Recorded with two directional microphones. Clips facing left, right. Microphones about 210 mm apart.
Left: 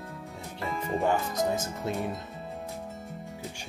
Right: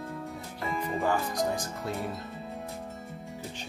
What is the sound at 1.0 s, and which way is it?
Speech, 25° left (ahead or behind).